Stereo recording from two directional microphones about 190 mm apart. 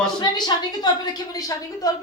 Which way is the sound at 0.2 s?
20° left (ahead or behind).